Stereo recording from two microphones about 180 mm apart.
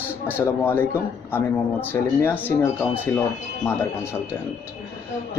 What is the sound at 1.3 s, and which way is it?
Speech, 10° left (ahead or behind).